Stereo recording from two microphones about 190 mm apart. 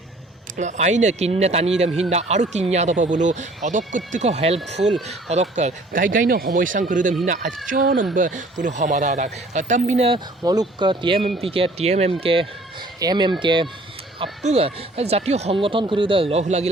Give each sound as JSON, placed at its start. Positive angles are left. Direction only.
{"t": 0.5, "sound": "speech", "side_deg": -40}
{"t": 10.4, "sound": "speech", "side_deg": -20}